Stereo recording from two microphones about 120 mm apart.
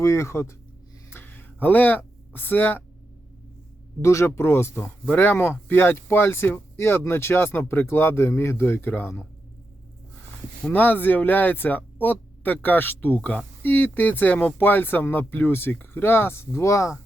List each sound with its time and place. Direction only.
0.0 s speech: 25° left (ahead or behind)
1.1 s a sound: 15° left (ahead or behind)
4.0 s speech: 25° left (ahead or behind)
10.6 s speech: 15° left (ahead or behind)